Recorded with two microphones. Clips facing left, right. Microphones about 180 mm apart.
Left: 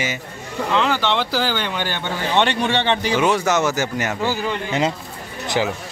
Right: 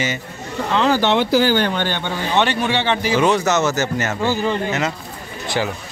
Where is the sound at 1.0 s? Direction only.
50° right (ahead or behind).